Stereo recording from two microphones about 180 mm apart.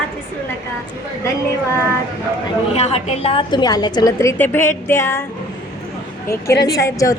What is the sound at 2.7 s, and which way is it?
A woman's voice, 35° left (ahead or behind).